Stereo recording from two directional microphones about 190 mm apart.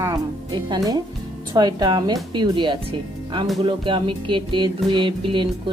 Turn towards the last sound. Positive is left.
turn(degrees=-25)  # may be behind; listen again after turning